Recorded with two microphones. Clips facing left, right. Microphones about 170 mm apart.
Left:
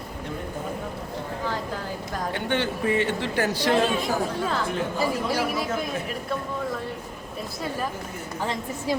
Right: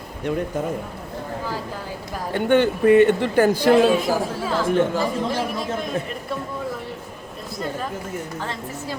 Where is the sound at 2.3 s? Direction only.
50° right (ahead or behind).